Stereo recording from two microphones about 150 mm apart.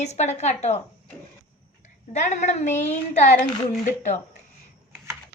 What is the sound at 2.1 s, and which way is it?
A woman's voice, 55° left (ahead or behind).